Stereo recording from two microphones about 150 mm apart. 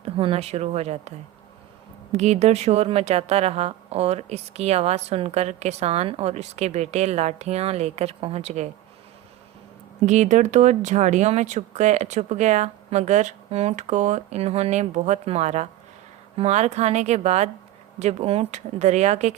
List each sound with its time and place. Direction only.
0.0 s speech: 40° right (ahead or behind)
2.1 s speech: 50° right (ahead or behind)
10.0 s speech: 50° right (ahead or behind)